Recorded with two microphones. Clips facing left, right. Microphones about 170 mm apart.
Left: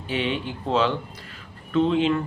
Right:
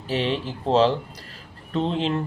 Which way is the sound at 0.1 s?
35° right (ahead or behind).